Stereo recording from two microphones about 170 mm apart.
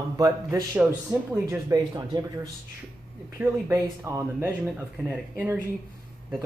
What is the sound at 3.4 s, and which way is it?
Speech, 15° right (ahead or behind).